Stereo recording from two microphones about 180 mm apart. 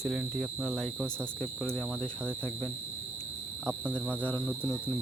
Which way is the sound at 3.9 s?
5° left (ahead or behind).